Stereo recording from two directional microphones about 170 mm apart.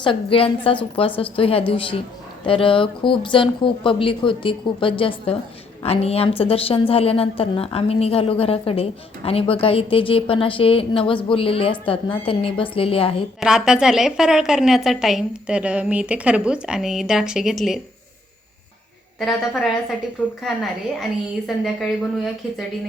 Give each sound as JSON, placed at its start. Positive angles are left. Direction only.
{"t": 0.0, "sound": "a woman's voice", "side_deg": 30}
{"t": 13.4, "sound": "a woman's voice", "side_deg": -5}
{"t": 19.2, "sound": "a woman's voice", "side_deg": 0}
{"t": 21.0, "sound": "a woman's voice", "side_deg": 0}